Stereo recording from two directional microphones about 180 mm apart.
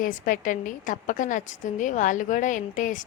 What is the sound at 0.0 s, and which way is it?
A woman's voice, 50° left (ahead or behind).